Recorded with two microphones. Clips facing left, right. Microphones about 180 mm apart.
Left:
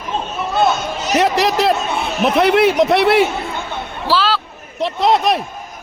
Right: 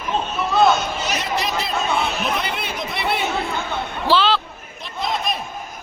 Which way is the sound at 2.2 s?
75° left (ahead or behind).